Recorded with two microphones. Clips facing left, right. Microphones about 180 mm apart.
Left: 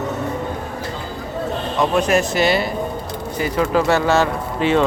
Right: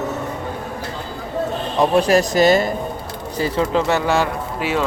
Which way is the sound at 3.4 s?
30° right (ahead or behind).